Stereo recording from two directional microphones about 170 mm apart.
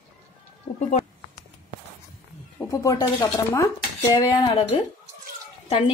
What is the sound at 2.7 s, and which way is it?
Speech, 20° left (ahead or behind).